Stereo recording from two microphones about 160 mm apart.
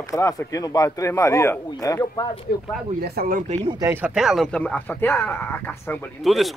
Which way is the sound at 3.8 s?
15° right (ahead or behind).